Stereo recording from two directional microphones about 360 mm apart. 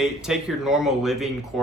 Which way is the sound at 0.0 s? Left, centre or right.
Centre.